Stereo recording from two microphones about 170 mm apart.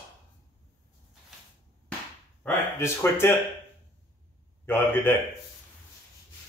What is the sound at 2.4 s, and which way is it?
Speech, 15° left (ahead or behind).